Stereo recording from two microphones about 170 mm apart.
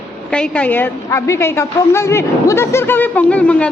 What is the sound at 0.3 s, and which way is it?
A woman's voice, 5° left (ahead or behind).